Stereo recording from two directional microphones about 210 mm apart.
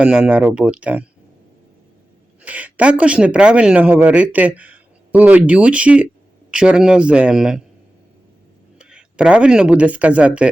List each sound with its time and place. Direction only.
0.0 s speech: 5° right (ahead or behind)
2.4 s a man's voice: 5° right (ahead or behind)
8.8 s speech: 5° right (ahead or behind)